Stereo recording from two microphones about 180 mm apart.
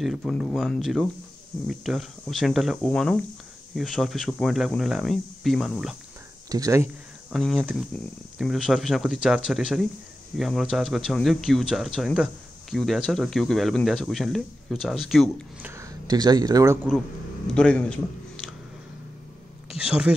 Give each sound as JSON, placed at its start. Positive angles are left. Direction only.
{"t": 0.0, "sound": "speech", "side_deg": 0}
{"t": 6.5, "sound": "speech", "side_deg": -15}
{"t": 7.3, "sound": "speech", "side_deg": 0}
{"t": 15.7, "sound": "speech", "side_deg": -20}
{"t": 17.6, "sound": "a man's voice", "side_deg": 5}
{"t": 19.7, "sound": "speech", "side_deg": -5}